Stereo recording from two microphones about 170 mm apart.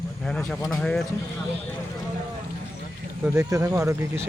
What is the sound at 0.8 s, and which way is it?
Speech, 5° left (ahead or behind).